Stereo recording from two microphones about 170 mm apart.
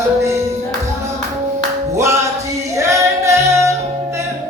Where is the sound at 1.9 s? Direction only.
15° right (ahead or behind).